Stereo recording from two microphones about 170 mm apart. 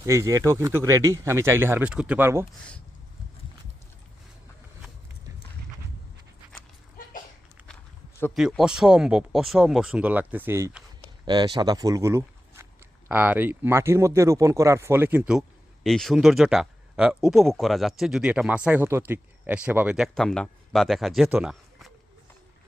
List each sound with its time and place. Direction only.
0.0 s speech: 15° right (ahead or behind)
8.3 s speech: centre (ahead or behind)
11.3 s speech: 25° right (ahead or behind); by 20.1 s 10° right (ahead or behind)
20.1 s speech: 5° left (ahead or behind)